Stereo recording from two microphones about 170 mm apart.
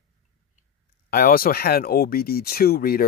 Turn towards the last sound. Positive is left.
turn(degrees=65)  # may be behind; listen again after turning